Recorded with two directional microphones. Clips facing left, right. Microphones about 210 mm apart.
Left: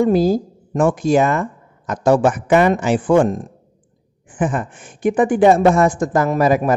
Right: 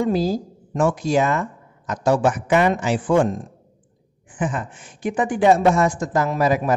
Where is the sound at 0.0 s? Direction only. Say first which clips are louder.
Left 6 dB; 55° left (ahead or behind).